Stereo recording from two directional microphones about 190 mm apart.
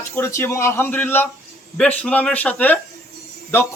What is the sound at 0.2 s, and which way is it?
A man's voice, 15° left (ahead or behind).